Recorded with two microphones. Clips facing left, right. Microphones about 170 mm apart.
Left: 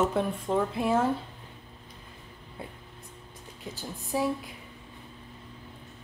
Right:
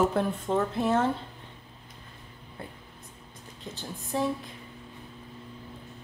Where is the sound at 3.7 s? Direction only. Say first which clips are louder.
Even; 5° left (ahead or behind).